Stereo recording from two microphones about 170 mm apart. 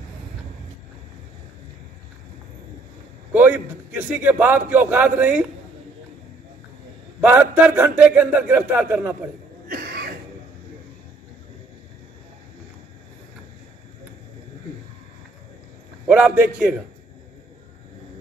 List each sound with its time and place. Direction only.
3.3 s a sound: 10° right (ahead or behind)
4.1 s speech: 10° right (ahead or behind)
7.2 s speech: 10° right (ahead or behind)
9.7 s cough: 65° right (ahead or behind)
16.1 s speech: 10° right (ahead or behind)